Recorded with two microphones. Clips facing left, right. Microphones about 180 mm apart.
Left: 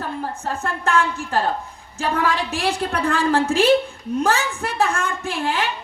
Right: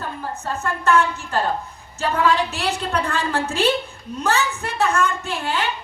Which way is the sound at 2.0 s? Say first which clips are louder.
Right 2 dB; 50° left (ahead or behind).